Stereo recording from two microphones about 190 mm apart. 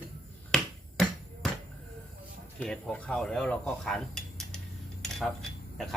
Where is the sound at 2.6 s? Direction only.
5° left (ahead or behind).